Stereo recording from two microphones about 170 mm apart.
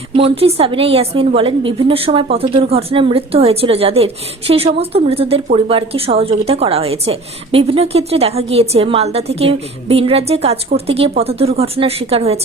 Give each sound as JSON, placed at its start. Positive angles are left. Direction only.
{"t": 0.2, "sound": "a woman's voice", "side_deg": -35}